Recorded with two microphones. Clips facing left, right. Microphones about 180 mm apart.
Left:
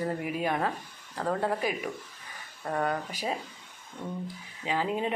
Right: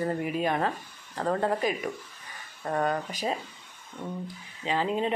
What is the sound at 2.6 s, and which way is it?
Speech, 10° right (ahead or behind).